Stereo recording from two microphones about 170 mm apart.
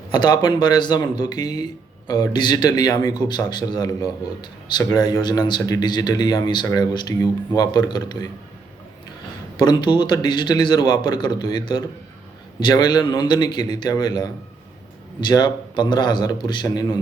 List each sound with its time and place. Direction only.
0.1 s speech: 25° left (ahead or behind)
9.6 s speech: 25° left (ahead or behind)